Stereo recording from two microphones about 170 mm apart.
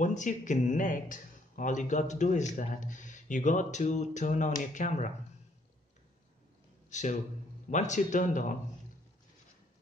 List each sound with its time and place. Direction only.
0.0 s speech: 45° left (ahead or behind)
6.9 s speech: 45° left (ahead or behind)